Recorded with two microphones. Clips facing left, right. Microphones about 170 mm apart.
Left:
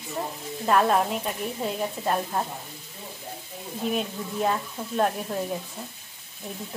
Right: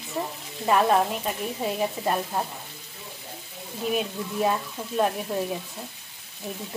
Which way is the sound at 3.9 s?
5° right (ahead or behind).